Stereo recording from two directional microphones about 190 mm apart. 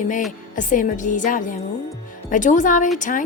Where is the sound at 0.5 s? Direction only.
40° left (ahead or behind).